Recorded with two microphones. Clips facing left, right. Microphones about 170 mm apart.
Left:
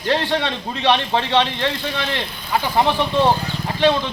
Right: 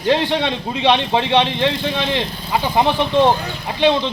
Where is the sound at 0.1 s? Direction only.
15° right (ahead or behind).